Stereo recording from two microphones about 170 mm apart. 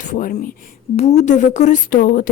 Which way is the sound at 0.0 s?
50° left (ahead or behind).